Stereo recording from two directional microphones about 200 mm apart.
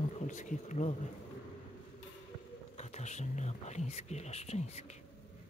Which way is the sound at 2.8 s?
35° left (ahead or behind).